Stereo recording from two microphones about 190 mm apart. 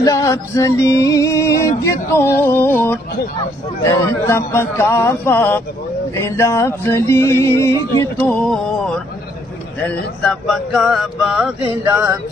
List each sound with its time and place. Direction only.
0.0 s music: 15° left (ahead or behind)
10.2 s speech: centre (ahead or behind)
11.8 s speech: 15° right (ahead or behind)